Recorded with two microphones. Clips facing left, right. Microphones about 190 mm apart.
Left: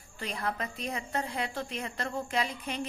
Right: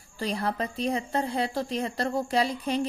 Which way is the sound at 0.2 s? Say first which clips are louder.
Right 6 dB; 35° right (ahead or behind).